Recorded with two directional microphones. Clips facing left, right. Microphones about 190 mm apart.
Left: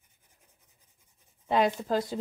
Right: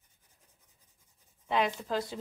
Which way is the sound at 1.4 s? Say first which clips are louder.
Left 5 dB; 40° left (ahead or behind).